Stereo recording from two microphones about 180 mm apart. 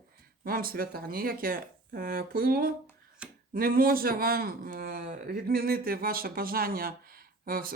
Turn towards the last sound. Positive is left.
turn(degrees=-55)  # may be behind; listen again after turning